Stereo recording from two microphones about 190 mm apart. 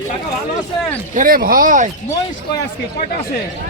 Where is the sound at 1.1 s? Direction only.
45° right (ahead or behind).